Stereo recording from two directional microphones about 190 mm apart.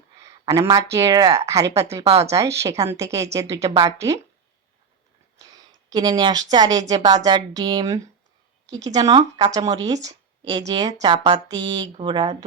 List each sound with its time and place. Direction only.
0.2 s a sound: 15° right (ahead or behind)
0.9 s speech: 20° right (ahead or behind)
2.0 s speech: 30° right (ahead or behind)
2.3 s speech: 15° right (ahead or behind)
5.9 s speech: 20° right (ahead or behind)